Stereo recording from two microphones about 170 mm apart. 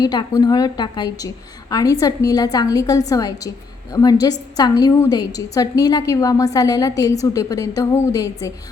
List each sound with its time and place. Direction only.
0.0 s a woman's voice: 25° left (ahead or behind)